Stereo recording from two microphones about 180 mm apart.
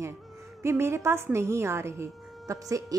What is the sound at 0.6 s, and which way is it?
A woman's voice, 15° right (ahead or behind).